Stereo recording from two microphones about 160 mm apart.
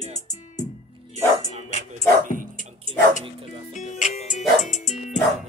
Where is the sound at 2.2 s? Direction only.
60° right (ahead or behind).